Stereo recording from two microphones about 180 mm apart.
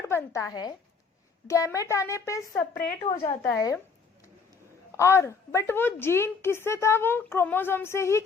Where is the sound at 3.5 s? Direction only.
20° left (ahead or behind).